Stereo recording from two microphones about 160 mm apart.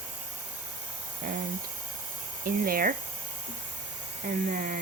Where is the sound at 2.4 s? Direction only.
65° right (ahead or behind).